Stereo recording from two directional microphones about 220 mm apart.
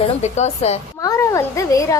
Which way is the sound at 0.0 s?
30° left (ahead or behind).